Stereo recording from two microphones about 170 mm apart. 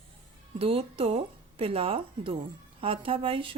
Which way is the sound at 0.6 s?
35° right (ahead or behind).